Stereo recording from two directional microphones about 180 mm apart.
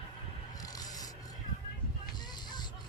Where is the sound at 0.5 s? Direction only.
20° left (ahead or behind).